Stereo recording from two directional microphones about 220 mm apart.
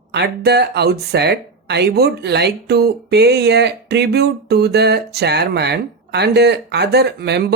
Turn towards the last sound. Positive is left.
turn(degrees=-45)  # may be behind; listen again after turning